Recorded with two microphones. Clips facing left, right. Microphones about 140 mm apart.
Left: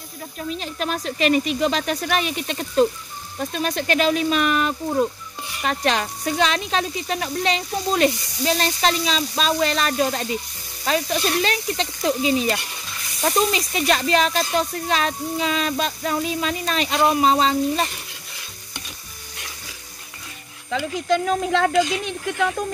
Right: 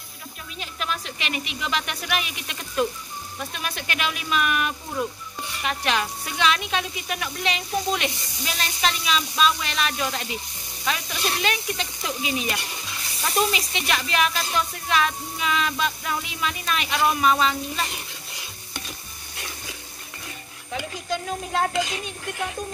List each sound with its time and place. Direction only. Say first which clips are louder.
0.5 s speech: left 5 dB; 40° left (ahead or behind)
20.7 s speech: left 8 dB; 90° left